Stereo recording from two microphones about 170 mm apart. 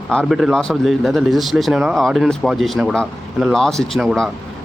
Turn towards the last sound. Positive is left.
turn(degrees=0)  # may be behind; listen again after turning